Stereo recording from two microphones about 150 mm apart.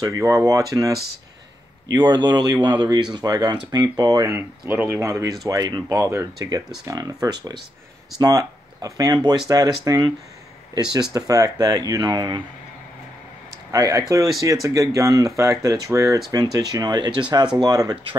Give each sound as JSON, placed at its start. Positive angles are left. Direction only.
{"t": 0.0, "sound": "speech", "side_deg": -20}
{"t": 2.0, "sound": "speech", "side_deg": -30}
{"t": 13.7, "sound": "speech", "side_deg": -20}